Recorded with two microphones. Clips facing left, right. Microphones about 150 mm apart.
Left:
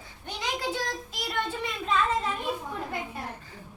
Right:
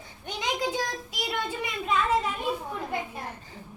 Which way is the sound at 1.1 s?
10° right (ahead or behind).